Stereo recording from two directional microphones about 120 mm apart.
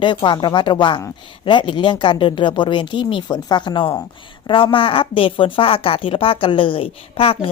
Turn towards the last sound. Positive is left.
turn(degrees=50)  # may be behind; listen again after turning